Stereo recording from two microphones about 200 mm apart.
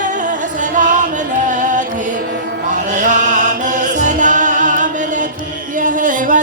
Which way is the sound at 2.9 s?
40° right (ahead or behind).